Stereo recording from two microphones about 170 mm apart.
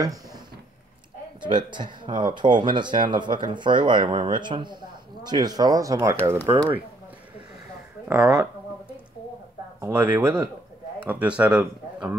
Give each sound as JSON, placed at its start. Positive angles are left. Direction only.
{"t": 1.4, "sound": "speech", "side_deg": -25}
{"t": 8.1, "sound": "a sound", "side_deg": -5}
{"t": 9.8, "sound": "speech", "side_deg": -15}